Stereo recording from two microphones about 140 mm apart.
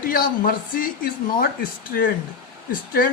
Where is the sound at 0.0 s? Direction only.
90° left.